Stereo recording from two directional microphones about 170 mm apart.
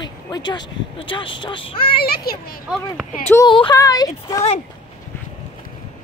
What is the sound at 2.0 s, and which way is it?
Speech, 65° left (ahead or behind).